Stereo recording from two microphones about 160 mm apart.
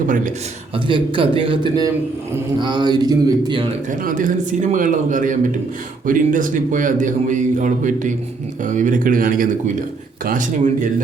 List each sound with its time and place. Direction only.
0.9 s speech: 30° right (ahead or behind)
4.0 s a man's voice: 55° right (ahead or behind)